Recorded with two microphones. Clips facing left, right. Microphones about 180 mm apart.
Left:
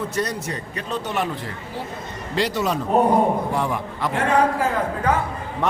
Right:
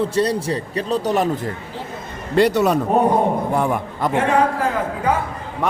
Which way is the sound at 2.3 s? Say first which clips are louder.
Right 7 dB; 60° right (ahead or behind).